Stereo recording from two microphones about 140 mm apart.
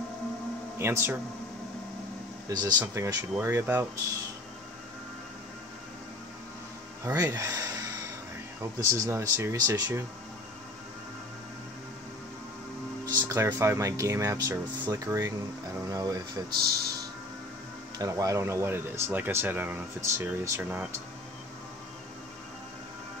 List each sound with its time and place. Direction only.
0.7 s speech: 15° right (ahead or behind)
2.5 s speech: 25° right (ahead or behind)
7.1 s speech: 20° right (ahead or behind)
13.1 s speech: 25° right (ahead or behind)
17.9 s speech: 25° right (ahead or behind)